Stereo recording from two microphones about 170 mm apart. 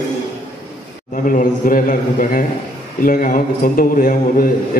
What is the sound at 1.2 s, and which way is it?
A man's voice, 55° left (ahead or behind).